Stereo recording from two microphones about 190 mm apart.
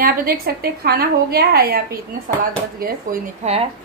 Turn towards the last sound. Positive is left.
turn(degrees=-35)  # may be behind; listen again after turning